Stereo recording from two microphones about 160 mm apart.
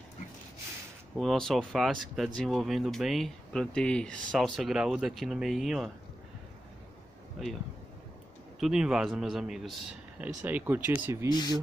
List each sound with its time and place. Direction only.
1.1 s speech: centre (ahead or behind)
7.4 s speech: centre (ahead or behind)
8.5 s speech: 5° right (ahead or behind)
11.2 s speech: 25° left (ahead or behind)